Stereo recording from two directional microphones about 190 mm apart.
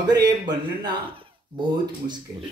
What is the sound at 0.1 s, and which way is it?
Speech, 20° right (ahead or behind).